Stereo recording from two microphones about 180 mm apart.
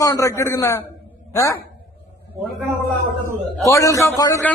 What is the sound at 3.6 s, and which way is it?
Speech, 15° left (ahead or behind).